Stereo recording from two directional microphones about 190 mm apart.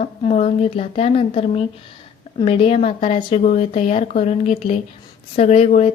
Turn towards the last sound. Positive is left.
turn(degrees=35)  # may be behind; listen again after turning